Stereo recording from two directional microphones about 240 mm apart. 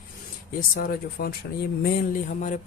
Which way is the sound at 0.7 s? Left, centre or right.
Left.